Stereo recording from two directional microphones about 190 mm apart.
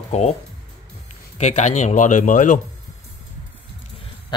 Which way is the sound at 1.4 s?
35° left (ahead or behind).